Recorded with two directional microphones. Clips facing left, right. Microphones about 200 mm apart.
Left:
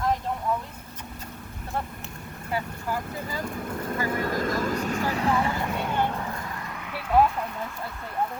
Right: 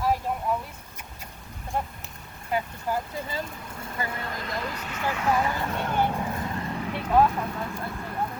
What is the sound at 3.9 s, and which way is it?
Speech, 45° left (ahead or behind).